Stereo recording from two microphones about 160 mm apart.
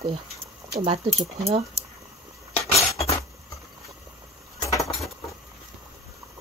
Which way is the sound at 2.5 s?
20° left (ahead or behind).